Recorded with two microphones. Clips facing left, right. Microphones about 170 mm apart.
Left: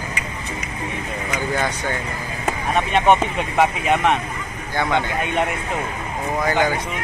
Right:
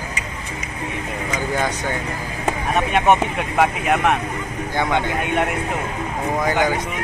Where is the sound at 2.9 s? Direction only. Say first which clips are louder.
Left 1 dB; 5° right (ahead or behind).